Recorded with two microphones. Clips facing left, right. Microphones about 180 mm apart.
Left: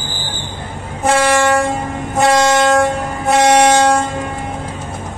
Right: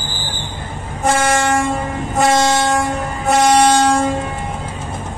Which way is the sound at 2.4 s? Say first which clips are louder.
Left 4 dB; 65° left (ahead or behind).